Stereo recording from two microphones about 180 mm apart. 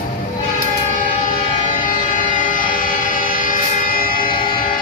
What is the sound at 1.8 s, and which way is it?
Train, 45° left (ahead or behind).